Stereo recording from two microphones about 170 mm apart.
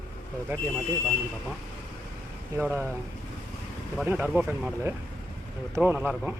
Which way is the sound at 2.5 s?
15° right (ahead or behind).